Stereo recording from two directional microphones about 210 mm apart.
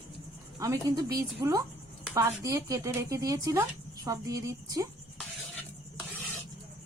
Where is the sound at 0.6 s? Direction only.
15° right (ahead or behind).